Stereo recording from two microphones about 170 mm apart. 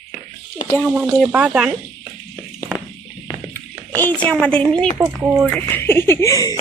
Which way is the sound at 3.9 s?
10° left (ahead or behind).